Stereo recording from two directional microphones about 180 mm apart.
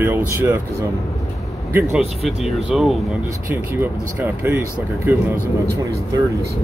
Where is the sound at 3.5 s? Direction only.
10° right (ahead or behind).